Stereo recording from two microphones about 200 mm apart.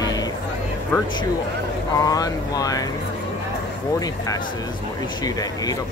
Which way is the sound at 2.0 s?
20° left (ahead or behind).